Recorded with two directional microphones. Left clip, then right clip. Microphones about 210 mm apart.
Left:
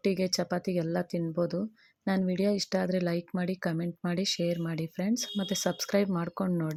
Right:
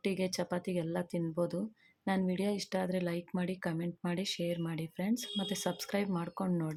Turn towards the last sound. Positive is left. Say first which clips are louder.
# left 4 dB
turn(degrees=20)  # may be behind; listen again after turning